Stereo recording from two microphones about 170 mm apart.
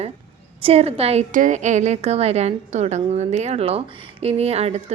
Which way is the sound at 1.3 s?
50° right (ahead or behind).